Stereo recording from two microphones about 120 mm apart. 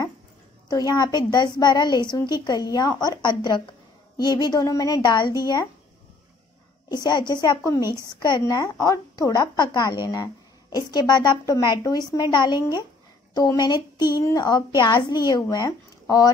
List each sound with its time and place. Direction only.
0.7 s a woman's voice: 30° left (ahead or behind)
6.9 s a woman's voice: 35° left (ahead or behind)
7.8 s a woman's voice: 20° right (ahead or behind)
8.1 s a woman's voice: 35° left (ahead or behind)